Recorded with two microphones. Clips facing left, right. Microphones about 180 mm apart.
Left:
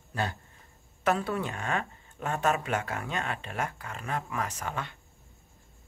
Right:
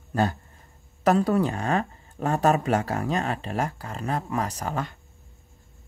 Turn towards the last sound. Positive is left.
turn(degrees=-40)  # may be behind; listen again after turning